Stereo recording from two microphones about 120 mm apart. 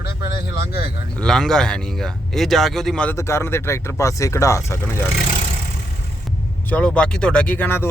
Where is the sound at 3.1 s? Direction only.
25° left (ahead or behind).